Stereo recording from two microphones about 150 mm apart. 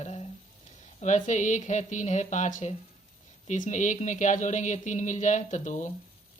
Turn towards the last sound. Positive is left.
turn(degrees=55)  # may be behind; listen again after turning